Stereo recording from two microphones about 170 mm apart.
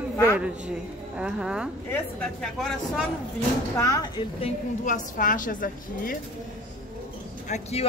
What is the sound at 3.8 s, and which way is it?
Speech, 20° left (ahead or behind).